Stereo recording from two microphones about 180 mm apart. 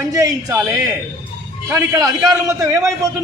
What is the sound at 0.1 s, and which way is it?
Speech, 20° right (ahead or behind).